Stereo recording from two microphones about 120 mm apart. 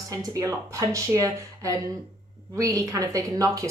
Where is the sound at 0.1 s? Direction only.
30° right (ahead or behind).